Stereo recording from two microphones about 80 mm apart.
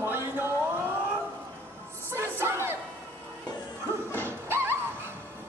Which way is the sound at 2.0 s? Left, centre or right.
Right.